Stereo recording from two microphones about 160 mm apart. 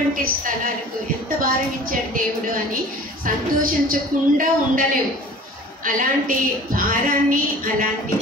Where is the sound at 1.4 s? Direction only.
60° right (ahead or behind).